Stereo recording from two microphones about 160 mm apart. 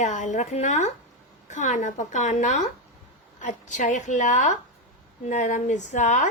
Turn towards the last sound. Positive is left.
turn(degrees=50)  # may be behind; listen again after turning